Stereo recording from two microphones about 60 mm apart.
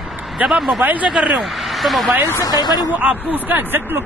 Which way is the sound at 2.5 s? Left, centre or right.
Left.